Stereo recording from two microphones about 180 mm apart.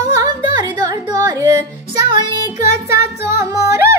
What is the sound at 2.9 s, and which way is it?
Music, 15° right (ahead or behind).